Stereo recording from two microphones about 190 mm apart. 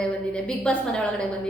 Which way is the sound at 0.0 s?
5° left (ahead or behind).